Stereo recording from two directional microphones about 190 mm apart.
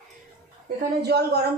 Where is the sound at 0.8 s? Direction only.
55° right (ahead or behind).